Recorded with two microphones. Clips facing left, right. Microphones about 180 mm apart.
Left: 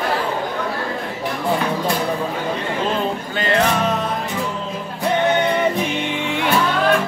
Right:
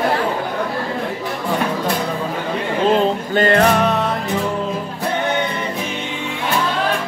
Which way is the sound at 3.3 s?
45° right (ahead or behind).